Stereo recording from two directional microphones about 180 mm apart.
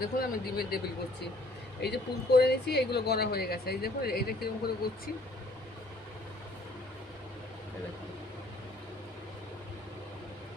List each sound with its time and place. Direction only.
0.0 s speech: 55° left (ahead or behind)
1.8 s speech: 65° left (ahead or behind)